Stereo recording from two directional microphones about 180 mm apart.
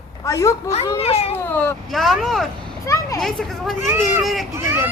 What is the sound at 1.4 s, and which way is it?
Speech, 10° left (ahead or behind).